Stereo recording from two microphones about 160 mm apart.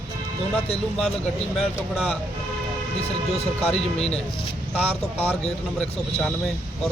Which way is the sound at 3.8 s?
40° left (ahead or behind).